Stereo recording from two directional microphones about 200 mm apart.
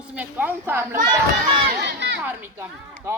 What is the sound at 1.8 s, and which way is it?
Speech, 60° right (ahead or behind).